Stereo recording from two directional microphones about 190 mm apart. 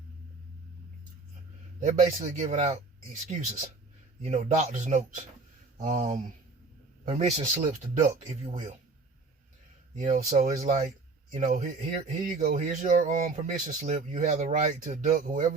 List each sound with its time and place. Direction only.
1.8 s speech: 35° right (ahead or behind)
9.9 s speech: 35° right (ahead or behind)